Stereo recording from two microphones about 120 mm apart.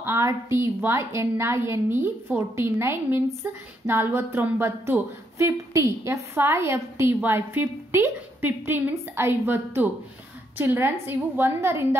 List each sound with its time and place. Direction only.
0.0 s a woman's voice: 20° right (ahead or behind)